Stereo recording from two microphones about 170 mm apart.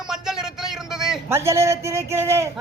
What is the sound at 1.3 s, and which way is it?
A man's voice, 15° right (ahead or behind).